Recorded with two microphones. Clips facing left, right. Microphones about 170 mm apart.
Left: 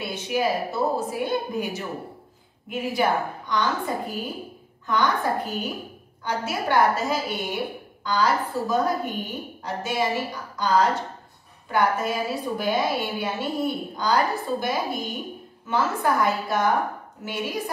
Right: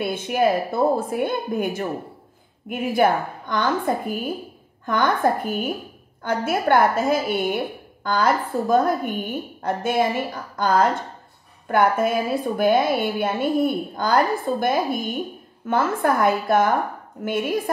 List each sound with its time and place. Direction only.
0.0 s a woman's voice: 55° right (ahead or behind)